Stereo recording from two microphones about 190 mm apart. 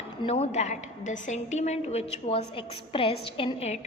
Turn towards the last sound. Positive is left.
turn(degrees=35)  # may be behind; listen again after turning